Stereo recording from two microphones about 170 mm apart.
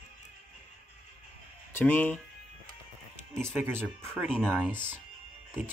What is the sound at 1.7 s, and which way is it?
Speech, 10° left (ahead or behind).